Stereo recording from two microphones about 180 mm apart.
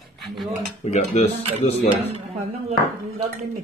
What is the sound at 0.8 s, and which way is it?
Speech, 35° left (ahead or behind).